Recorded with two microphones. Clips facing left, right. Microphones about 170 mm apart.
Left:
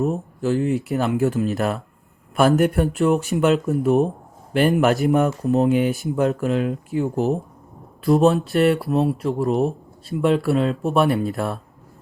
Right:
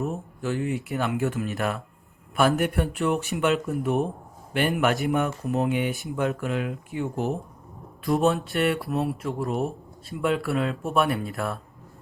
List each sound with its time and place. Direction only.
0.0 s speech: 35° left (ahead or behind)